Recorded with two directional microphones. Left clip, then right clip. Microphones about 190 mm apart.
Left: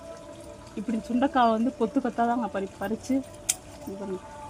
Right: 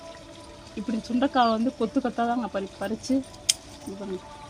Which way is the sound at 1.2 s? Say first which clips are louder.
Even; 20° right (ahead or behind).